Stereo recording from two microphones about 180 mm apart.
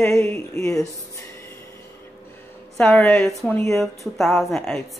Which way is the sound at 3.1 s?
Centre (ahead or behind).